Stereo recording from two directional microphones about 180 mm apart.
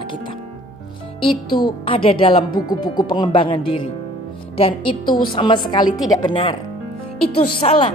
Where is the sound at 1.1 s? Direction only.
30° left (ahead or behind).